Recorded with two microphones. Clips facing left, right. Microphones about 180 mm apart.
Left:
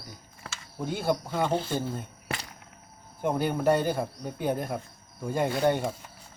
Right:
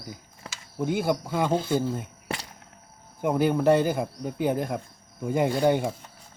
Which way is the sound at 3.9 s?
15° right (ahead or behind).